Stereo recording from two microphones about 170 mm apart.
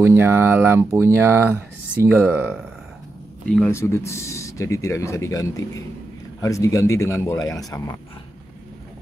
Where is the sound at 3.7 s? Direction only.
15° left (ahead or behind).